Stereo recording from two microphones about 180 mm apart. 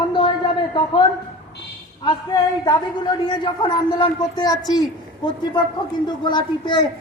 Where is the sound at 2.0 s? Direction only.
25° left (ahead or behind).